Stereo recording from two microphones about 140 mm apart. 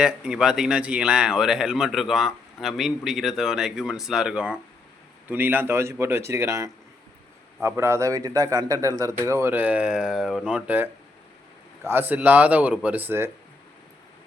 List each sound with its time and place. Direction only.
0.0 s a man's voice: 5° right (ahead or behind)
11.9 s speech: 15° right (ahead or behind)